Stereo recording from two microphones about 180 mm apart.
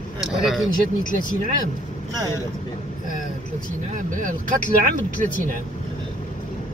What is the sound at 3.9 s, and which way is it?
Speech, 45° right (ahead or behind).